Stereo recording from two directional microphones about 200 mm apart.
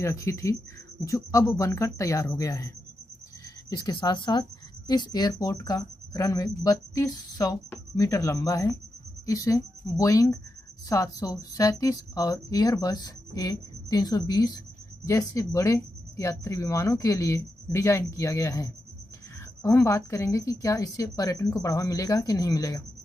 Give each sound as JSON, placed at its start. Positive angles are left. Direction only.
{"t": 0.0, "sound": "speech", "side_deg": 15}
{"t": 3.7, "sound": "speech", "side_deg": 20}